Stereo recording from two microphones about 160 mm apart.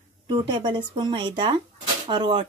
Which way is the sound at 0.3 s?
30° right (ahead or behind).